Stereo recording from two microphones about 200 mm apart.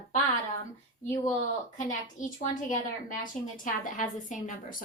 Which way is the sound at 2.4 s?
40° left (ahead or behind).